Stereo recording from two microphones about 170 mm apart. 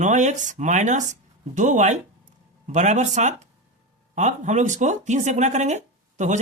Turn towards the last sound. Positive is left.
turn(degrees=-45)  # may be behind; listen again after turning